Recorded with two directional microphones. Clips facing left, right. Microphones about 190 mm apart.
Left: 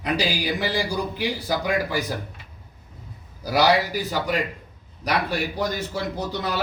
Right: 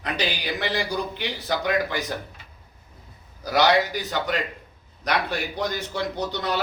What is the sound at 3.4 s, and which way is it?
A man's voice, 10° left (ahead or behind).